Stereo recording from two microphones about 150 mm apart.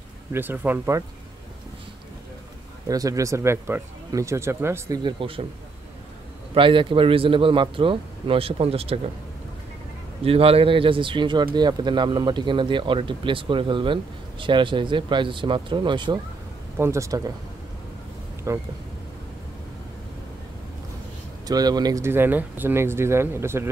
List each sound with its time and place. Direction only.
0.3 s speech: 15° right (ahead or behind)
2.9 s speech: 25° right (ahead or behind)
5.2 s a man's voice: 35° right (ahead or behind)
6.5 s a man's voice: 35° right (ahead or behind)
10.2 s a man's voice: 40° right (ahead or behind)
16.7 s speech: 15° right (ahead or behind)
18.5 s speech: 20° right (ahead or behind)
21.5 s speech: 25° right (ahead or behind)